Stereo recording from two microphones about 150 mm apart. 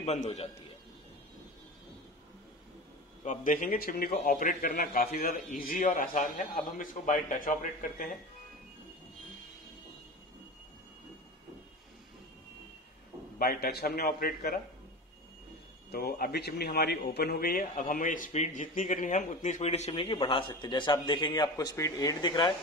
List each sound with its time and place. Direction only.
0.0 s a man's voice: 45° left (ahead or behind)
3.3 s a man's voice: 60° left (ahead or behind)
13.4 s a man's voice: 85° left
15.9 s speech: 90° left; by 22.5 s 30° left (ahead or behind)